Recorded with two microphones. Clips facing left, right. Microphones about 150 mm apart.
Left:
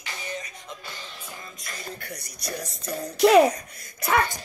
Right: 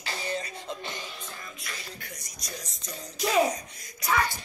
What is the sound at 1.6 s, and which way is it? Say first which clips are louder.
Music: left 7 dB; 55° left (ahead or behind).